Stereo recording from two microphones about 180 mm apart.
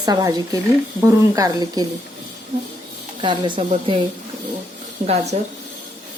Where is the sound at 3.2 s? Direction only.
25° right (ahead or behind).